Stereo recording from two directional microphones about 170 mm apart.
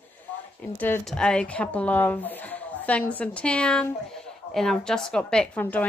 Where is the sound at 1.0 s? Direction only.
5° left (ahead or behind).